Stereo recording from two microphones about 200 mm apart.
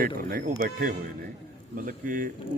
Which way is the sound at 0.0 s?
45° right (ahead or behind).